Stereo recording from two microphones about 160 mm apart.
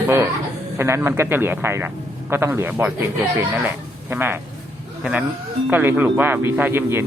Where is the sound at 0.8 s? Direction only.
15° right (ahead or behind).